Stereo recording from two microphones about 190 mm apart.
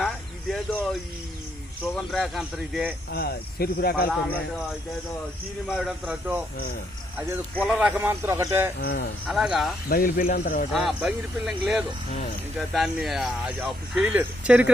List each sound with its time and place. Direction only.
0.0 s a sound: centre (ahead or behind)
1.8 s speech: 5° left (ahead or behind)
3.1 s speech: 55° left (ahead or behind)
5.6 s speech: 5° right (ahead or behind)
7.6 s a man's voice: 5° right (ahead or behind)
8.8 s speech: 55° left (ahead or behind)
9.2 s speech: centre (ahead or behind)
9.9 s speech: 45° left (ahead or behind)
10.7 s speech: centre (ahead or behind)